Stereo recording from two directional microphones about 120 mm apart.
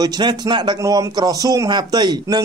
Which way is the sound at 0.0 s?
40° right (ahead or behind).